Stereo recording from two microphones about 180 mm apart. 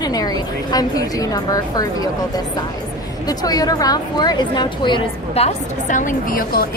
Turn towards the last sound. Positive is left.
turn(degrees=55)  # may be behind; listen again after turning